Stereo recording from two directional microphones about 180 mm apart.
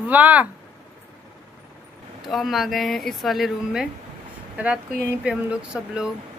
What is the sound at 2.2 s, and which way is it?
A woman's voice, centre (ahead or behind).